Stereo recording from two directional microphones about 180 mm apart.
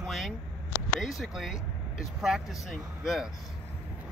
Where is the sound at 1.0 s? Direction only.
Centre (ahead or behind).